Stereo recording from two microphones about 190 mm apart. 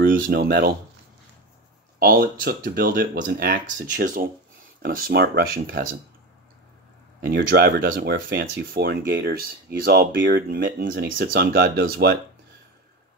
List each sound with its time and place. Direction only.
0.0 s speech: 50° right (ahead or behind)
2.0 s speech: 50° right (ahead or behind)
7.2 s speech: 60° right (ahead or behind)